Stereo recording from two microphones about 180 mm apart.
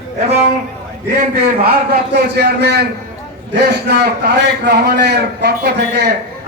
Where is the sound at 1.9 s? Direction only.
65° right (ahead or behind).